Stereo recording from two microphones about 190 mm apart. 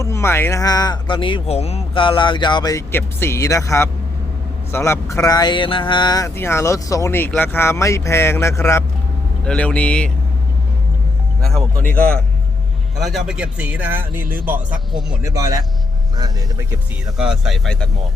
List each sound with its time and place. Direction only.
0.0 s speech: 15° left (ahead or behind)
11.4 s speech: 5° left (ahead or behind); by 15.6 s 20° right (ahead or behind)
17.2 s speech: 5° right (ahead or behind)